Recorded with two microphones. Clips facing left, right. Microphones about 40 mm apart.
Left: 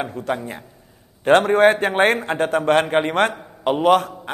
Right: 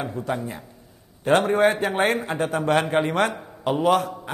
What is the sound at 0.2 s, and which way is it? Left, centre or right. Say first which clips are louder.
A man's voice: left 2 dB; left.